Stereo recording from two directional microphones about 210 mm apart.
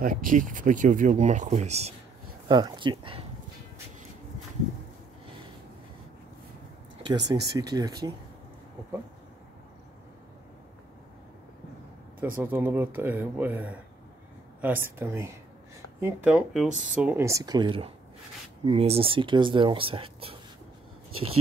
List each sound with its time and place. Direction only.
0.0 s speech: 40° right (ahead or behind)
2.4 s speech: 20° right (ahead or behind)
7.0 s speech: 20° right (ahead or behind)
12.2 s speech: 10° right (ahead or behind); by 20.3 s 25° right (ahead or behind)